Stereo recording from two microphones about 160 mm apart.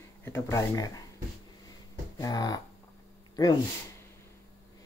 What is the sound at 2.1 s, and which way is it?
Speech, 25° left (ahead or behind).